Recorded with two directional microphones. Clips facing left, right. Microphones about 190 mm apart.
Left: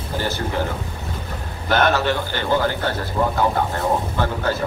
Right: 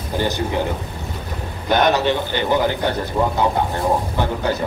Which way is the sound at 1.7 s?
15° right (ahead or behind).